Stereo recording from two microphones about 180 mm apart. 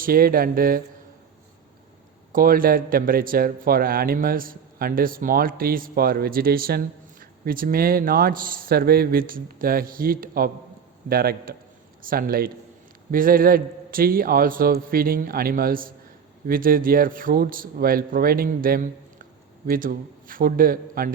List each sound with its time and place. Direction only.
0.0 s speech: 55° right (ahead or behind)
2.3 s a man's voice: 50° right (ahead or behind)